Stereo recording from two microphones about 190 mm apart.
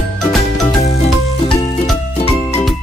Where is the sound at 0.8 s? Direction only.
35° left (ahead or behind).